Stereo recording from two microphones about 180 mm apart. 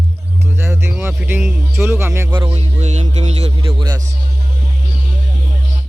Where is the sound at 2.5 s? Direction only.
40° right (ahead or behind).